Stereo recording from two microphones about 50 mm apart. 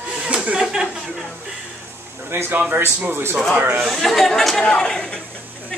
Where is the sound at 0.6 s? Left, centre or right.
Centre.